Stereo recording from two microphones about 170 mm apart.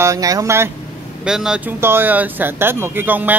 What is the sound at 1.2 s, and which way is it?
Speech, 5° right (ahead or behind).